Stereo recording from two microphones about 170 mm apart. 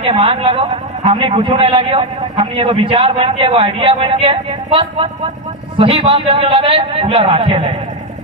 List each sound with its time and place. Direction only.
0.0 s a man's voice: 35° right (ahead or behind)